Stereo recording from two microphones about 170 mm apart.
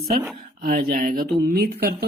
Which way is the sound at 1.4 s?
65° right (ahead or behind).